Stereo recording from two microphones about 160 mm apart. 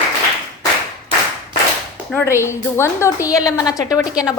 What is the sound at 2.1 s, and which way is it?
A woman's voice, 15° left (ahead or behind).